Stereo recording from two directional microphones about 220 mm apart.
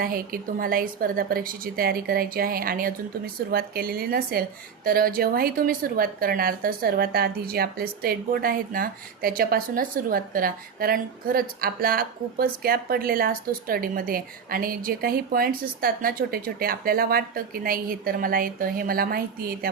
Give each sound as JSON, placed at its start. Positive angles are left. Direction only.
{"t": 0.0, "sound": "a woman's voice", "side_deg": -40}